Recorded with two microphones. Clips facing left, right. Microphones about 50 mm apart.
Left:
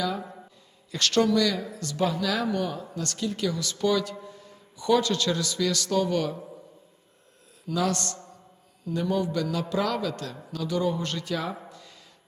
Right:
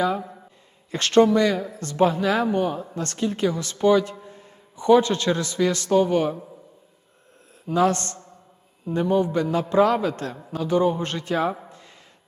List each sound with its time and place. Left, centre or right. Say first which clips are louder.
0.9 s a man's voice: right 6 dB; right
7.7 s a man's voice: right 6 dB; right